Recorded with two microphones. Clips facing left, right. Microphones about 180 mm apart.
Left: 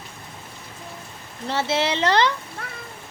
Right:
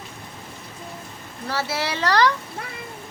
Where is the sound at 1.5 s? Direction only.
25° left (ahead or behind).